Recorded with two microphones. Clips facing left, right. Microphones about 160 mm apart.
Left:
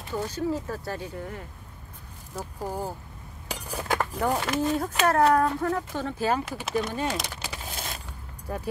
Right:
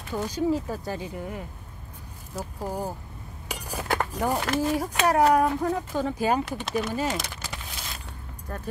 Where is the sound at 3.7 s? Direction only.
10° right (ahead or behind).